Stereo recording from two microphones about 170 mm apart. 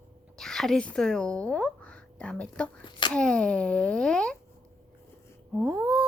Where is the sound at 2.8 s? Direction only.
25° left (ahead or behind).